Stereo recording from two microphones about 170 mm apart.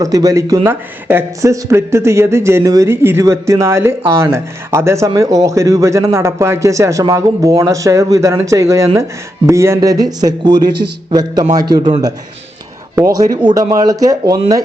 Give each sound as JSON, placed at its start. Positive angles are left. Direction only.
{"t": 0.0, "sound": "speech", "side_deg": -20}
{"t": 13.1, "sound": "speech", "side_deg": -20}